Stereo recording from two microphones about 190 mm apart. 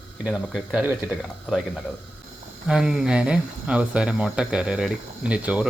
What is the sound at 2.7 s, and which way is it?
Speech, 5° right (ahead or behind).